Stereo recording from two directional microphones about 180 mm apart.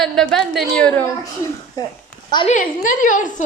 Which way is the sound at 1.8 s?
20° left (ahead or behind).